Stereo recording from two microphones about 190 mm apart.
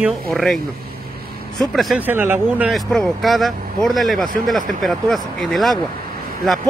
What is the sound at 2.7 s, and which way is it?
Speech, centre (ahead or behind).